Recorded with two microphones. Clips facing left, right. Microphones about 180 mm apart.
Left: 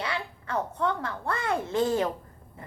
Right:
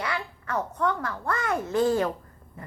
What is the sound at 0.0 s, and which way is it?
A woman's voice, 25° left (ahead or behind).